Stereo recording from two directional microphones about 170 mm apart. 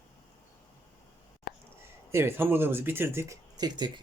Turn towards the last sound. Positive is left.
turn(degrees=-25)  # may be behind; listen again after turning